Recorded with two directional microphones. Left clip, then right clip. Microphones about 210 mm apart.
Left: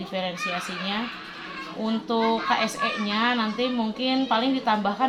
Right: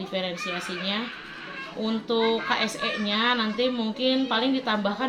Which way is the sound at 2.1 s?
45° left (ahead or behind).